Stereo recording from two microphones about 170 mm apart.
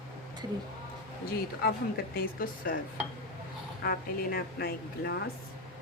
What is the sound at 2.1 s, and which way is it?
Speech, 60° left (ahead or behind).